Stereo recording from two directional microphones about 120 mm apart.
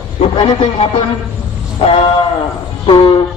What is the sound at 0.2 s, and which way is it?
Speech, 55° left (ahead or behind).